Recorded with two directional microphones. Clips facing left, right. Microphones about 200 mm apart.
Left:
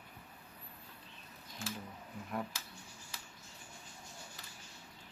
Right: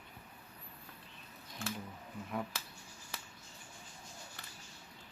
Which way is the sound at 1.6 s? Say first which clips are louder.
Right 2 dB; 65° right (ahead or behind).